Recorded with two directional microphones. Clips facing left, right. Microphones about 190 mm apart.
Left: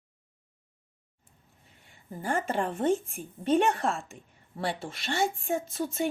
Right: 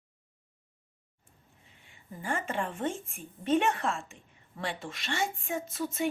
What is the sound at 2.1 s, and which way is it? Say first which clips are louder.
A woman's voice: left 4 dB; 35° left (ahead or behind).